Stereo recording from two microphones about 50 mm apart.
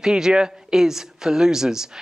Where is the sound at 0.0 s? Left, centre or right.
Centre.